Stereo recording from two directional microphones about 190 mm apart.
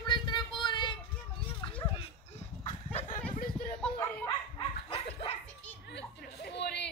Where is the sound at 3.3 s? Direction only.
45° left (ahead or behind).